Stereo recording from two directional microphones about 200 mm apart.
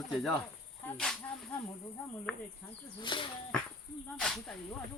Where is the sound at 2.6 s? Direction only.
10° left (ahead or behind).